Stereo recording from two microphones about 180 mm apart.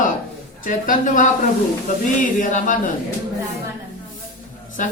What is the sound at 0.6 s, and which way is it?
Speech, 45° left (ahead or behind).